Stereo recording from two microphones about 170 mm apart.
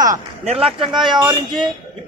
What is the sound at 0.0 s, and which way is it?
Speech, 50° right (ahead or behind).